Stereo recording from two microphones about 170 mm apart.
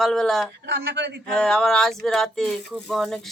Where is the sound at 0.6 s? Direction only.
90° right.